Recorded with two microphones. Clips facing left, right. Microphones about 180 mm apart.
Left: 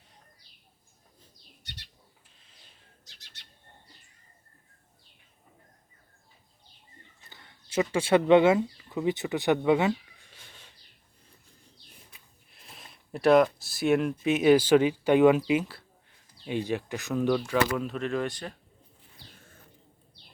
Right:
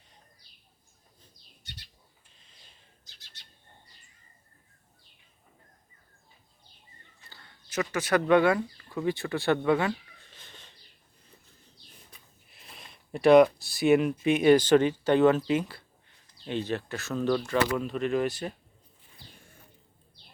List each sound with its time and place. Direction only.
7.3 s speech: 20° left (ahead or behind)
12.5 s speech: centre (ahead or behind)